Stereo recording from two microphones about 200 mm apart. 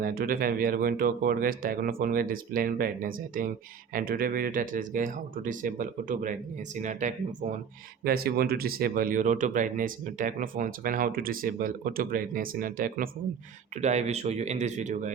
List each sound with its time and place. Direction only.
0.0 s speech: 45° right (ahead or behind)
8.0 s speech: 50° right (ahead or behind)